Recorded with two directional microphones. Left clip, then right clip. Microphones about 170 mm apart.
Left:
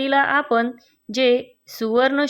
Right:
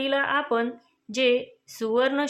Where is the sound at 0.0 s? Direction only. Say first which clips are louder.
Left 6 dB; 30° left (ahead or behind).